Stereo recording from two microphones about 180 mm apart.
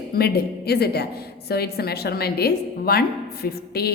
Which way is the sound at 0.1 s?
60° left (ahead or behind).